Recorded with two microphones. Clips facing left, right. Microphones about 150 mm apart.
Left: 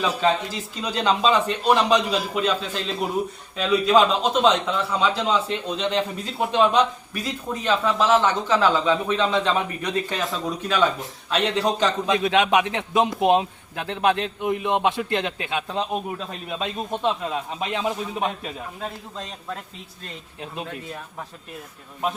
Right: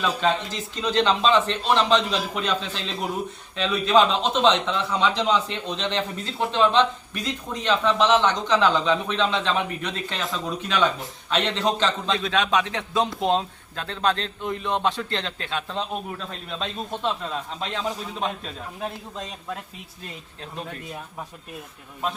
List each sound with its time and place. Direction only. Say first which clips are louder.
0.0 s a man's voice: left 2 dB; 10° left (ahead or behind)
18.8 s a man's voice: right 1 dB; 10° right (ahead or behind)